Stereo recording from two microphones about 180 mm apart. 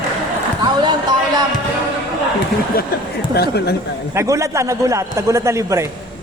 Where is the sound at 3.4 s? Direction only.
65° left (ahead or behind).